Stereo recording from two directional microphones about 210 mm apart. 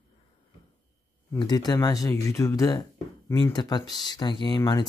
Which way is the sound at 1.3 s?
20° left (ahead or behind).